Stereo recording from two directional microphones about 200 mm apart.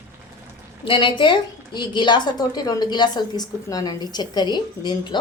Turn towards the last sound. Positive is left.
turn(degrees=20)  # may be behind; listen again after turning